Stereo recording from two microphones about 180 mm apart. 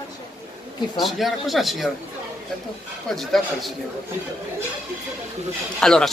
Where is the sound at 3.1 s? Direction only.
Centre (ahead or behind).